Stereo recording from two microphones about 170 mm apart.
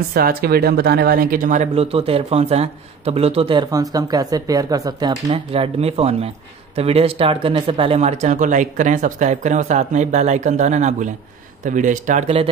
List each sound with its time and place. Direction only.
0.1 s speech: 60° right (ahead or behind); by 12.4 s 40° right (ahead or behind)